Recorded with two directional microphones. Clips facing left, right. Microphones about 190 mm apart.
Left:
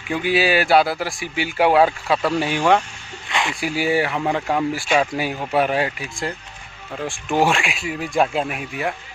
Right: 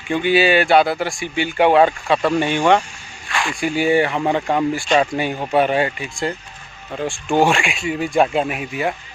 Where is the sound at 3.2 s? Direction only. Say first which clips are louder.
Even; 20° left (ahead or behind).